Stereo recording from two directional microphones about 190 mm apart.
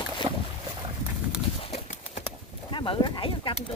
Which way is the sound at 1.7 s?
40° left (ahead or behind).